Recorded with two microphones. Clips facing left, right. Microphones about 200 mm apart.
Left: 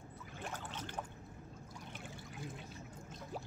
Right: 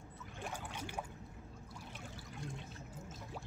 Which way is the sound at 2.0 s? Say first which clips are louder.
Left 1 dB; 5° left (ahead or behind).